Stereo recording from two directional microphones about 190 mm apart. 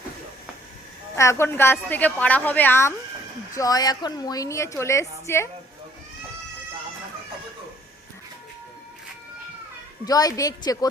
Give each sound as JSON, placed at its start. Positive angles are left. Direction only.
{"t": 1.1, "sound": "a woman's voice", "side_deg": 15}
{"t": 10.1, "sound": "a woman's voice", "side_deg": 20}